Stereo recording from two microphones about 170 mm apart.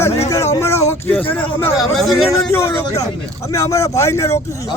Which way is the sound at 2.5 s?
15° left (ahead or behind).